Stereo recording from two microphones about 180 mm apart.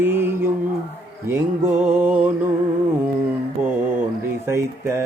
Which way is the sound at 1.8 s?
10° right (ahead or behind).